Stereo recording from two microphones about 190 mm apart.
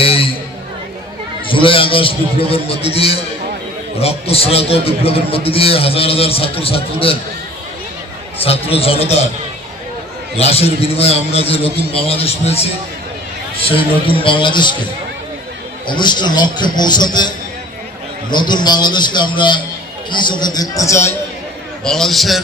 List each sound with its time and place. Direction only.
0.0 s chatter: 30° left (ahead or behind)
1.5 s a man's voice: 25° left (ahead or behind)
8.4 s a man's voice: 30° left (ahead or behind)
10.3 s a man's voice: 30° left (ahead or behind)
13.6 s a man's voice: 30° left (ahead or behind)
15.9 s a man's voice: 25° left (ahead or behind)
21.8 s a man's voice: centre (ahead or behind)